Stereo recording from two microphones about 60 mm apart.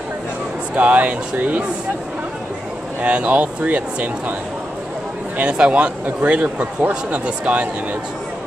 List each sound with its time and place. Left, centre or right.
0.7 s speech: right
3.0 s speech: right
5.4 s speech: right